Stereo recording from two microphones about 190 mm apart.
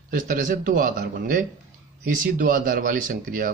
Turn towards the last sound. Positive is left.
turn(degrees=-45)  # may be behind; listen again after turning